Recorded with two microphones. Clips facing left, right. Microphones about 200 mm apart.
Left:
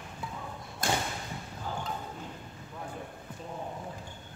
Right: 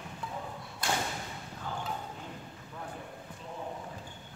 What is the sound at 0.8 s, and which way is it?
Thump, 45° left (ahead or behind).